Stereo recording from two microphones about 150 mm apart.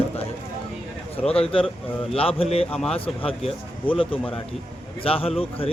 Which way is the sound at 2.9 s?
40° left (ahead or behind).